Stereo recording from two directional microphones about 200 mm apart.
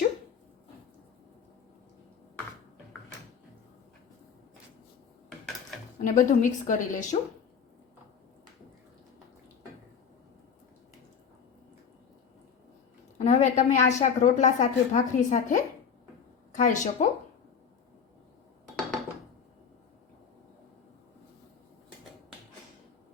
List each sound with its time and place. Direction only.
6.1 s a woman's voice: 40° left (ahead or behind)
13.1 s a woman's voice: 35° left (ahead or behind)